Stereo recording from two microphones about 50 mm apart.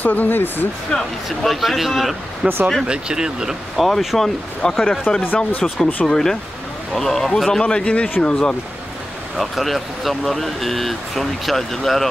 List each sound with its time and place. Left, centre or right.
0.0 s speech: left
0.9 s speech: centre
2.4 s speech: right
2.9 s speech: centre
3.8 s speech: centre
5.1 s speech: left
5.6 s speech: centre
7.6 s speech: left
9.4 s speech: centre